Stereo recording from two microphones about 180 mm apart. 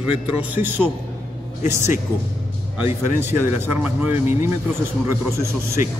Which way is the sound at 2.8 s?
10° right (ahead or behind).